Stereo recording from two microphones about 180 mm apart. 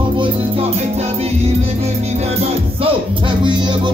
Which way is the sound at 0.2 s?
35° right (ahead or behind).